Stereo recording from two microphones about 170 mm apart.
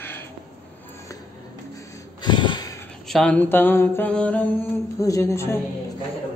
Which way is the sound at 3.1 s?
5° left (ahead or behind).